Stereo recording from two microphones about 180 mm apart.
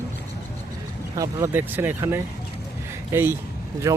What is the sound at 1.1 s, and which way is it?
Speech, 15° right (ahead or behind).